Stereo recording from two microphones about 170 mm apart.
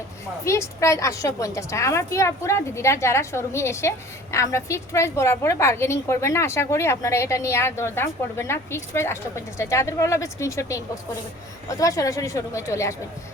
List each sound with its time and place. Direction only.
0.4 s a woman's voice: 15° left (ahead or behind)